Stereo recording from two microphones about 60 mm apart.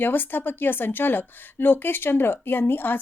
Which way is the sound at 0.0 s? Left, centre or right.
Left.